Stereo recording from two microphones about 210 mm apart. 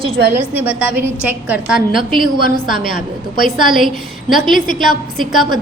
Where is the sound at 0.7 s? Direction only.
5° right (ahead or behind).